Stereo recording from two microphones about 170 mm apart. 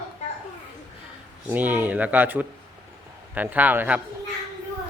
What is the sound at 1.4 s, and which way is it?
Speech, 10° right (ahead or behind).